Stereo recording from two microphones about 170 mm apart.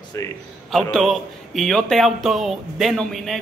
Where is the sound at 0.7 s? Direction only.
5° left (ahead or behind).